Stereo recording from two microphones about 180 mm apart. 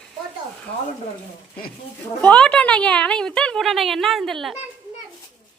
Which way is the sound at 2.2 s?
5° left (ahead or behind).